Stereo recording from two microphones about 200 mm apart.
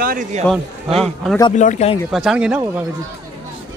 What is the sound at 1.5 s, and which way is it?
Speech, 35° left (ahead or behind).